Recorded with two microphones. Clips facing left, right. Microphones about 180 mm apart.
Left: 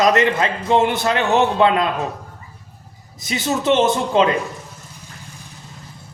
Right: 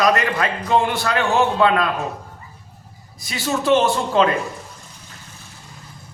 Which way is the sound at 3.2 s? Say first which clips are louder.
Left 2 dB; 20° left (ahead or behind).